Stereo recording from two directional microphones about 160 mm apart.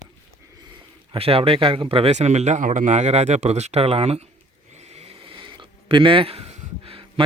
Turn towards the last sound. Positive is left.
turn(degrees=-35)  # may be behind; listen again after turning